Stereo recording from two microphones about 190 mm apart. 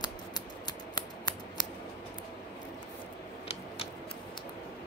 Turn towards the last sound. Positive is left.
turn(degrees=30)  # may be behind; listen again after turning